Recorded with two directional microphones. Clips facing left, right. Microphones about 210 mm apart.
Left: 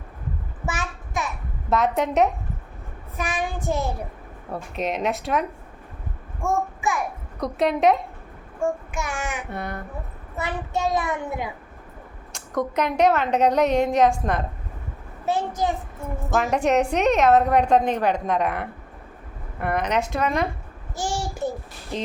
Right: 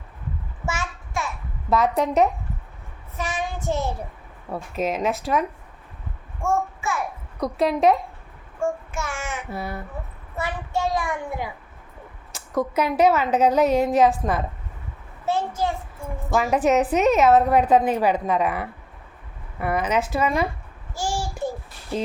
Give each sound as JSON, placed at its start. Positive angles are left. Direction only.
{"t": 0.6, "sound": "child singing", "side_deg": 15}
{"t": 1.7, "sound": "a woman's voice", "side_deg": 0}
{"t": 3.2, "sound": "child singing", "side_deg": 15}
{"t": 4.5, "sound": "a woman's voice", "side_deg": 0}
{"t": 6.4, "sound": "a child's voice", "side_deg": 15}
{"t": 7.3, "sound": "a woman's voice", "side_deg": 0}
{"t": 8.9, "sound": "child singing", "side_deg": 15}
{"t": 9.5, "sound": "a woman's voice", "side_deg": -5}
{"t": 10.3, "sound": "a child's voice", "side_deg": 20}
{"t": 12.3, "sound": "a woman's voice", "side_deg": -5}
{"t": 15.3, "sound": "child singing", "side_deg": 15}
{"t": 16.3, "sound": "a woman's voice", "side_deg": 0}